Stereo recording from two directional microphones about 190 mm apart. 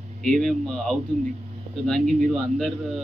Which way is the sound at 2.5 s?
Centre (ahead or behind).